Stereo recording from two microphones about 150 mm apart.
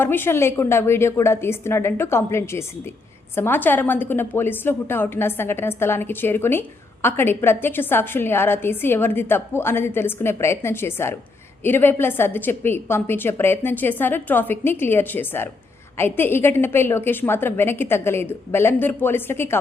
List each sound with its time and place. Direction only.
0.0 s a woman's voice: 15° left (ahead or behind)